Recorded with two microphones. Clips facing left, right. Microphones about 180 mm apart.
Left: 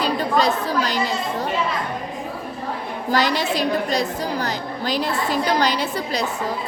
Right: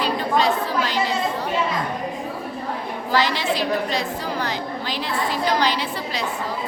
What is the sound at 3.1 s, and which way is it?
A woman's voice, 45° left (ahead or behind).